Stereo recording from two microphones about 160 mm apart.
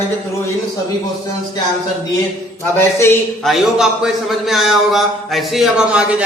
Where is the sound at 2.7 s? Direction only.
15° left (ahead or behind).